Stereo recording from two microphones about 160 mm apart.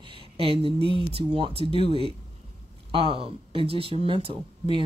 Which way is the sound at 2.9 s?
35° right (ahead or behind).